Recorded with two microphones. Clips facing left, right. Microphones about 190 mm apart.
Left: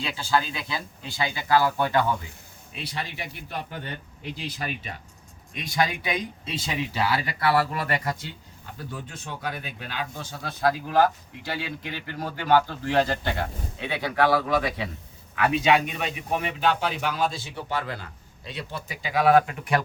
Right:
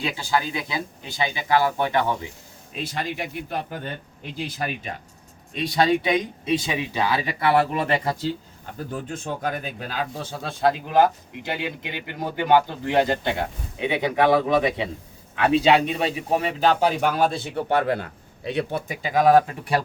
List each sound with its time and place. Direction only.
0.0 s speech: 20° right (ahead or behind)
2.8 s speech: 50° right (ahead or behind)
5.5 s speech: 30° right (ahead or behind)
9.0 s speech: 50° right (ahead or behind)